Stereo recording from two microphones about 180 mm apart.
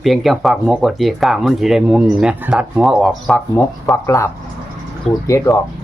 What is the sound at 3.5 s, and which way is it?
Speech, 15° left (ahead or behind).